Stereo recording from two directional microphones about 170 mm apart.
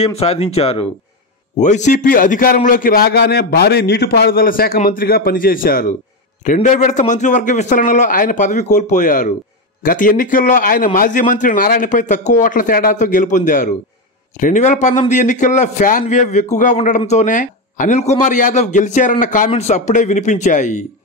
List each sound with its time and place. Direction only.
0.0 s a man's voice: 35° left (ahead or behind)